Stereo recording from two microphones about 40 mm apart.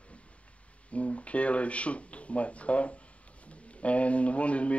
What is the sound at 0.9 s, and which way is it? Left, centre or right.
Speech, left.